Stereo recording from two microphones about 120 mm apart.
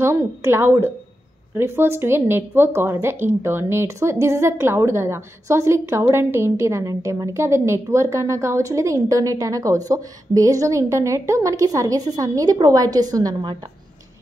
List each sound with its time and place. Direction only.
0.0 s a woman's voice: 20° right (ahead or behind)